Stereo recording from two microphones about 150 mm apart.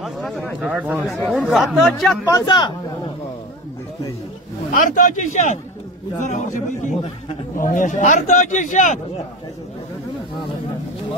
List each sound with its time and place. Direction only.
0.0 s a sound: centre (ahead or behind)
0.6 s speech: 10° right (ahead or behind)
2.2 s a man's voice: 25° left (ahead or behind)
4.7 s a man's voice: 60° left (ahead or behind)